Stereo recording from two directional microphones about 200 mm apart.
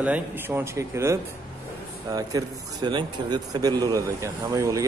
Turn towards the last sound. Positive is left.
turn(degrees=-15)  # may be behind; listen again after turning